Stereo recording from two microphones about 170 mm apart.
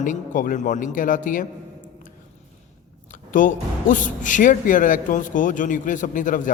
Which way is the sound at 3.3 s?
50° left (ahead or behind).